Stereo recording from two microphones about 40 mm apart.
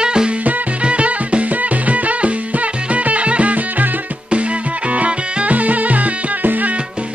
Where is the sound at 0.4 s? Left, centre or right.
Right.